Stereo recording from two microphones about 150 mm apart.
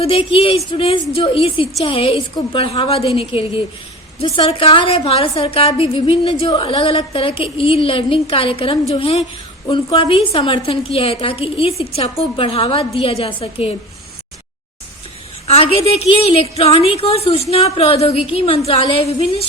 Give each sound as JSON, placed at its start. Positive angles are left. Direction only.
{"t": 0.0, "sound": "a woman's voice", "side_deg": 40}
{"t": 15.4, "sound": "a woman's voice", "side_deg": 40}